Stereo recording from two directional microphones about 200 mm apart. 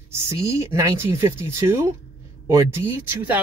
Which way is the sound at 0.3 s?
15° right (ahead or behind).